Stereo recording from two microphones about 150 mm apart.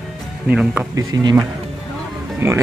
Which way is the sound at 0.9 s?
25° right (ahead or behind).